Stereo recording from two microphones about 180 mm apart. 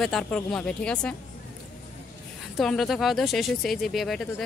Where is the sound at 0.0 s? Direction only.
5° left (ahead or behind).